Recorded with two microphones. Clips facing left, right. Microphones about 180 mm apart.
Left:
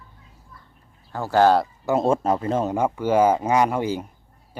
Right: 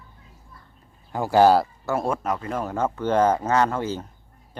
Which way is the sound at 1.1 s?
15° right (ahead or behind).